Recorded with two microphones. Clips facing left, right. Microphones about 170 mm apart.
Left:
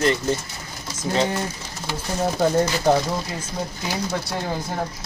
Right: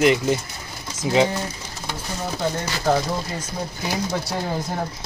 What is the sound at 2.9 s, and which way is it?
Speech, 20° left (ahead or behind).